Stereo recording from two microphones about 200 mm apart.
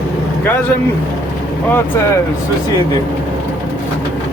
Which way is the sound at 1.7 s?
10° left (ahead or behind).